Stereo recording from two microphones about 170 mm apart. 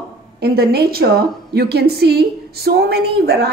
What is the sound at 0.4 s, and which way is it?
A woman's voice, 65° right (ahead or behind).